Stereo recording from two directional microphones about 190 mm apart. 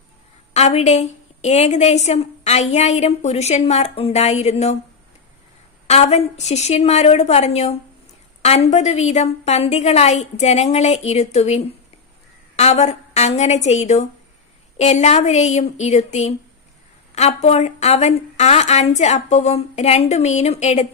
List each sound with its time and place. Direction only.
0.5 s a woman's voice: 35° left (ahead or behind)
5.9 s a woman's voice: 35° left (ahead or behind)